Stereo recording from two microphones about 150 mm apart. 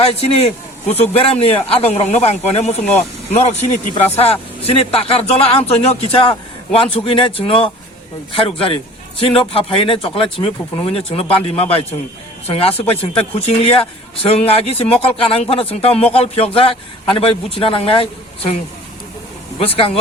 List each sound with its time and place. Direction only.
0.0 s speech: 45° left (ahead or behind)
19.5 s speech: 40° left (ahead or behind)